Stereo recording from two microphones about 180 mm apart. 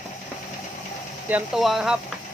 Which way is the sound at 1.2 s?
5° right (ahead or behind).